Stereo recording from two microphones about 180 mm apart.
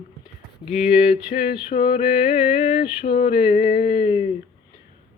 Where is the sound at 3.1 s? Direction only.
55° left (ahead or behind).